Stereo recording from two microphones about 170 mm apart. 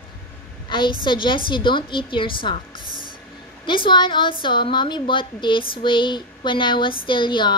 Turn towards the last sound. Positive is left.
turn(degrees=30)  # may be behind; listen again after turning